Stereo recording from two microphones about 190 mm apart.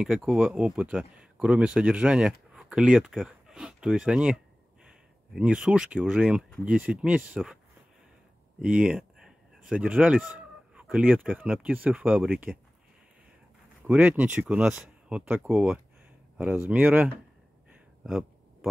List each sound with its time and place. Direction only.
0.0 s speech: centre (ahead or behind)
8.5 s speech: 5° right (ahead or behind)
13.8 s speech: 5° right (ahead or behind)
18.0 s a sound: centre (ahead or behind)